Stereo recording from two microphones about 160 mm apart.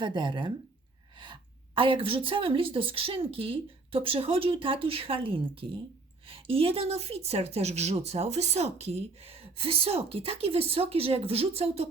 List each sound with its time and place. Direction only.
0.0 s a woman's voice: 30° right (ahead or behind)